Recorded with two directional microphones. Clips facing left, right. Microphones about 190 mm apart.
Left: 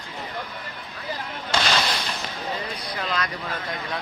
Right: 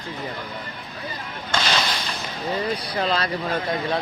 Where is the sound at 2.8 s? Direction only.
30° right (ahead or behind).